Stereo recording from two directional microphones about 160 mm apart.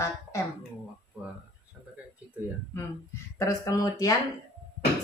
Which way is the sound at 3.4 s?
20° left (ahead or behind).